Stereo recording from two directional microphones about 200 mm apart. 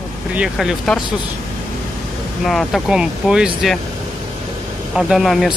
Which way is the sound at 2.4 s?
Centre (ahead or behind).